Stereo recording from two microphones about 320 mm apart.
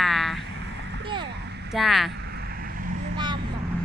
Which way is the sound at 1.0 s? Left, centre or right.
Centre.